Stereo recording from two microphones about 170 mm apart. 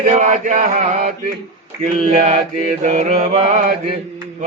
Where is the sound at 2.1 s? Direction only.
40° right (ahead or behind).